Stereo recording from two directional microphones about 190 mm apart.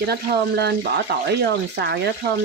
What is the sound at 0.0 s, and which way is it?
Speech, 60° right (ahead or behind).